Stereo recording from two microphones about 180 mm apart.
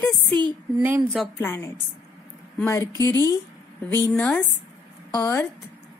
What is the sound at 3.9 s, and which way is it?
A woman's voice, 5° left (ahead or behind).